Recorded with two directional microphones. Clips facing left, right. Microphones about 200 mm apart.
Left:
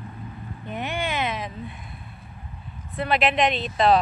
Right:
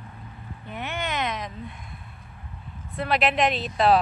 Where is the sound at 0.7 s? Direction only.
15° left (ahead or behind).